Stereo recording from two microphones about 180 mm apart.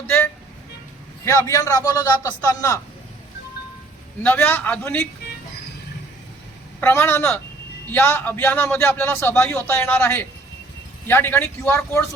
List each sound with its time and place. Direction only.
1.2 s a man's voice: 15° left (ahead or behind)
4.2 s a man's voice: 10° left (ahead or behind)
6.7 s a man's voice: 10° left (ahead or behind)